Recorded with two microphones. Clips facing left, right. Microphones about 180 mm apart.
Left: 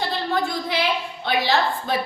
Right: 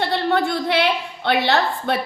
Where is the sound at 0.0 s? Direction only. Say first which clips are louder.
Right 4 dB; 65° right (ahead or behind).